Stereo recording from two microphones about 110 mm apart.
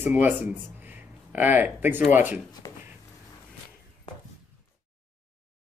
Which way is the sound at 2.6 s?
35° left (ahead or behind).